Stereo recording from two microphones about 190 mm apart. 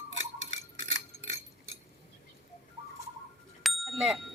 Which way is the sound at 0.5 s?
85° right.